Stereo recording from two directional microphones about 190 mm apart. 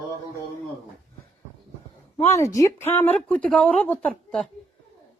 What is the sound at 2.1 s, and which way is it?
A woman's voice, 15° left (ahead or behind).